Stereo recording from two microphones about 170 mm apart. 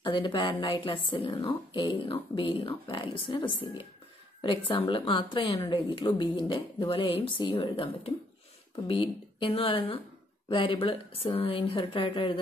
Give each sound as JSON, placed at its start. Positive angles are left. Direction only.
{"t": 0.0, "sound": "speech", "side_deg": 25}